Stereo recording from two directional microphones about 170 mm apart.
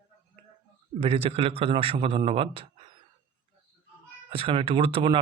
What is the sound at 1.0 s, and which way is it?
A man's voice, 35° right (ahead or behind).